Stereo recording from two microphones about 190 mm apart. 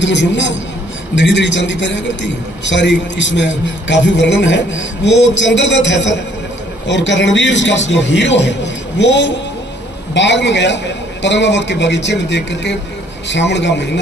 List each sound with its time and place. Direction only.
0.0 s a man's voice: 70° left (ahead or behind)